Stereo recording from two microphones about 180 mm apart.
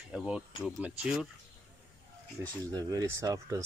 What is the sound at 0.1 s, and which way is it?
Speech, 5° right (ahead or behind).